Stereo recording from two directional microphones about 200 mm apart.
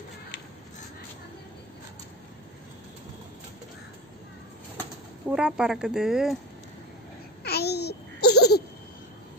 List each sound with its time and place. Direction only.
5.3 s speech: 5° right (ahead or behind)
7.4 s babbling: 55° left (ahead or behind)